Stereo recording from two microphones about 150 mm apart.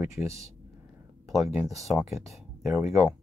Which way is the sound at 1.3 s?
Centre (ahead or behind).